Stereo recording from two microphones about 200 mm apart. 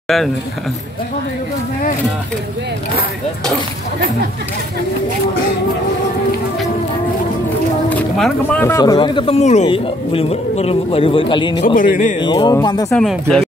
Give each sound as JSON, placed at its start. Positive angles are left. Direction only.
{"t": 7.9, "sound": "speech", "side_deg": 10}
{"t": 11.6, "sound": "speech", "side_deg": 45}
{"t": 12.2, "sound": "speech", "side_deg": 20}
{"t": 12.9, "sound": "speech", "side_deg": 0}